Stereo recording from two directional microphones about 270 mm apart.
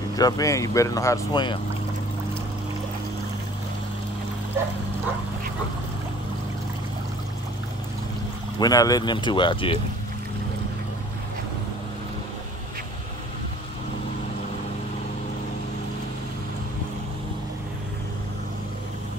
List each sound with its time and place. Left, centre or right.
0.1 s speech: centre
8.5 s speech: centre